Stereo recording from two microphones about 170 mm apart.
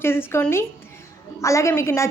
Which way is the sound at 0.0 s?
15° left (ahead or behind).